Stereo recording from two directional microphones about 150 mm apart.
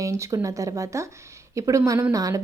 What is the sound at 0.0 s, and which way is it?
A woman's voice, 20° right (ahead or behind).